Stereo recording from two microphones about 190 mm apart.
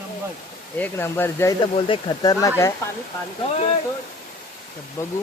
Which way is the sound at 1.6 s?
25° left (ahead or behind).